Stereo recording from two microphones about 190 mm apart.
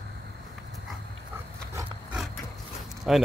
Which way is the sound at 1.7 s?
15° right (ahead or behind).